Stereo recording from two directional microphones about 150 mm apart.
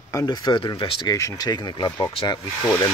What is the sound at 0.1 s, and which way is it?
Speech, 25° left (ahead or behind).